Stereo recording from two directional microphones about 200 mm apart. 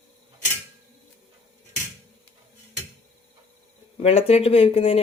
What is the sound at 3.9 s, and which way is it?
Speech, 30° left (ahead or behind).